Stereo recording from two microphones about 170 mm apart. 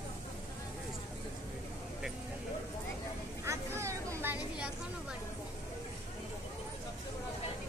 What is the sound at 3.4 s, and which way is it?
Vehicle, 15° right (ahead or behind).